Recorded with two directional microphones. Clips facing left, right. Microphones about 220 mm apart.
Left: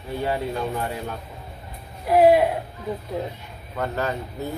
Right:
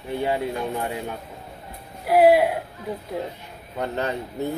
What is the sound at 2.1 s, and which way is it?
Speech, 5° right (ahead or behind).